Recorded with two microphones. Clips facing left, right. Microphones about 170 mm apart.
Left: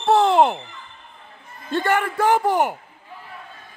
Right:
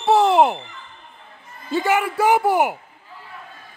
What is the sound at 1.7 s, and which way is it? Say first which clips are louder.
A man's voice: right 1 dB; 5° right (ahead or behind).